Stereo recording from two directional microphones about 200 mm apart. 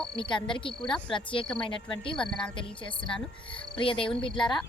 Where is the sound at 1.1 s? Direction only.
25° left (ahead or behind).